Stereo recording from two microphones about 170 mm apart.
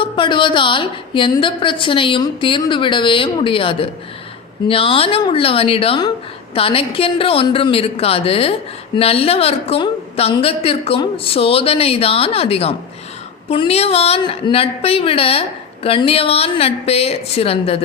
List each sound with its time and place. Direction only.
0.0 s a woman's voice: 30° left (ahead or behind)